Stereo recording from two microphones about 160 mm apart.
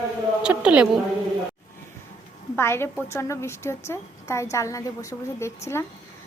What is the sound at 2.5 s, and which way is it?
A woman's voice, 15° left (ahead or behind).